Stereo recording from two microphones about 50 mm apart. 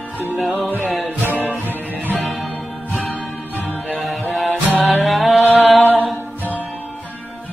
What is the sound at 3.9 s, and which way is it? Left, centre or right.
Music, centre.